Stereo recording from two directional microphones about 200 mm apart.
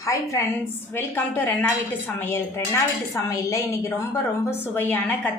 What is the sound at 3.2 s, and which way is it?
A woman's voice, 15° left (ahead or behind).